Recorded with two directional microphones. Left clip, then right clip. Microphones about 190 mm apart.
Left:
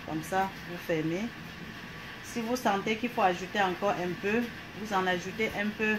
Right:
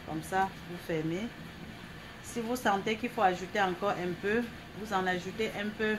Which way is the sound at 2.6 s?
25° left (ahead or behind).